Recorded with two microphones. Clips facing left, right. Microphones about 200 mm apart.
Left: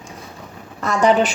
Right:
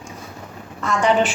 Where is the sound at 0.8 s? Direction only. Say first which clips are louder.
Left 2 dB; 40° left (ahead or behind).